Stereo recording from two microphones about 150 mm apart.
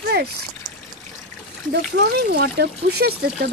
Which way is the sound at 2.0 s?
90° right.